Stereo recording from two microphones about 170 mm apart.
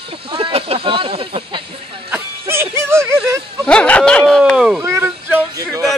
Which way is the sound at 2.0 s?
10° right (ahead or behind).